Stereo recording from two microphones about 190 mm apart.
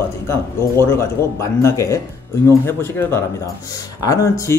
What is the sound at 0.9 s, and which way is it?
Speech, 15° left (ahead or behind).